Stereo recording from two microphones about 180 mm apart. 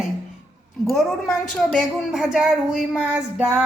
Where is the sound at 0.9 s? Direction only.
Centre (ahead or behind).